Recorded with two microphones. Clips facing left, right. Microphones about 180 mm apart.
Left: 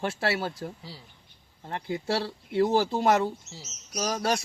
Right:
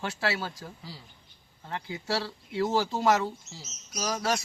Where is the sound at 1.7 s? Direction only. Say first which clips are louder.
Left 3 dB; 30° left (ahead or behind).